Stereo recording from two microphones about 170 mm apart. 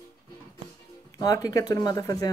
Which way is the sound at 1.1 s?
20° left (ahead or behind).